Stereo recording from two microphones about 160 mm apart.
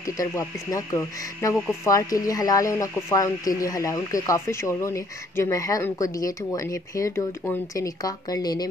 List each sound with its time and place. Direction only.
0.0 s speech: 20° left (ahead or behind)